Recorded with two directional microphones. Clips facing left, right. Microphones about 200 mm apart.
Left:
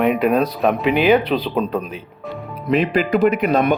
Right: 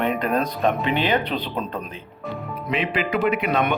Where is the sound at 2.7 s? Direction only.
40° left (ahead or behind).